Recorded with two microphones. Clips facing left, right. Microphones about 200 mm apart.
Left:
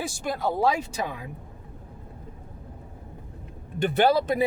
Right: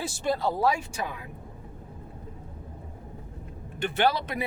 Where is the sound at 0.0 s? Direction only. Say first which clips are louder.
Right 1 dB; 15° left (ahead or behind).